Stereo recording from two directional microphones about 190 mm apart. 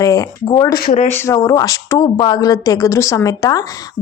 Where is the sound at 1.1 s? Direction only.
15° left (ahead or behind).